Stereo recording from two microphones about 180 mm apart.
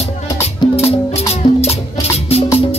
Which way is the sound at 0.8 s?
35° left (ahead or behind).